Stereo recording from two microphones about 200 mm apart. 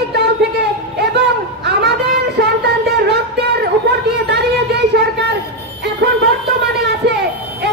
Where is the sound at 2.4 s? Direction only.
55° right (ahead or behind).